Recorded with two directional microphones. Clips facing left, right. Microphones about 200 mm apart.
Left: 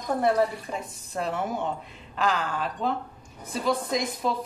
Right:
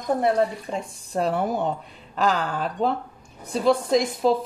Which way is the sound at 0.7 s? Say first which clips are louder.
Right 5 dB; 35° right (ahead or behind).